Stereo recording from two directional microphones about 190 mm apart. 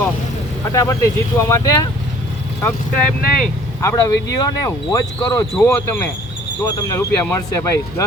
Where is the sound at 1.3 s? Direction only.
15° left (ahead or behind).